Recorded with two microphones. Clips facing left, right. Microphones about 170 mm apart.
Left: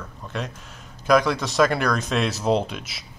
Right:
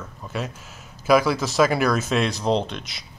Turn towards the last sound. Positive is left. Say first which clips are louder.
# even
turn(degrees=5)  # may be behind; listen again after turning